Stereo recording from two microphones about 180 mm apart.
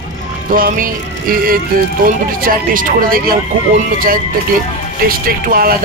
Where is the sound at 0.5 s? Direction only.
50° right (ahead or behind).